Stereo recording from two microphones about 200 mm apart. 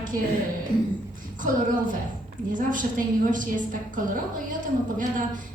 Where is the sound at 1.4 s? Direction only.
40° right (ahead or behind).